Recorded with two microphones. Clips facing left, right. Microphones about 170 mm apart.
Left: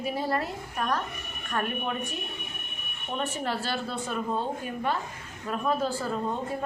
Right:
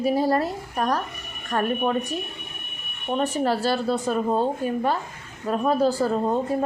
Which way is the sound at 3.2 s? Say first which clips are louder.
Right 8 dB; 40° right (ahead or behind).